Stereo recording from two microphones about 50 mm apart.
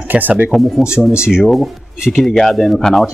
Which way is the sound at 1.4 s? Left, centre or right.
Centre.